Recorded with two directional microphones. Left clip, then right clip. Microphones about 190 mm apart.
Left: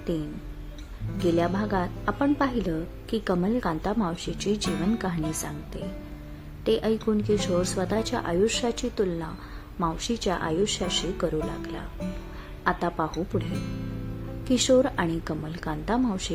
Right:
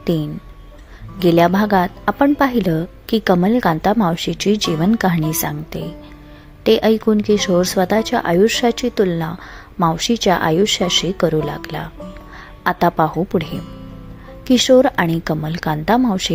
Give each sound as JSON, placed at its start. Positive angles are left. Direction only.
{"t": 1.2, "sound": "a woman's voice", "side_deg": -40}